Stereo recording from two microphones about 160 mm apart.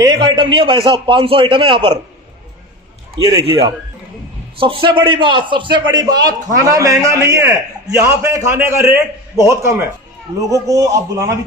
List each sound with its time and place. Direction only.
0.0 s a man's voice: 30° right (ahead or behind)
3.3 s a man's voice: 35° right (ahead or behind); by 11.3 s 20° right (ahead or behind)